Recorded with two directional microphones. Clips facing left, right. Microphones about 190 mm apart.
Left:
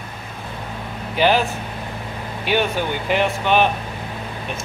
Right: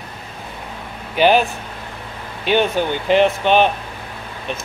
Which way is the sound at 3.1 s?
25° right (ahead or behind).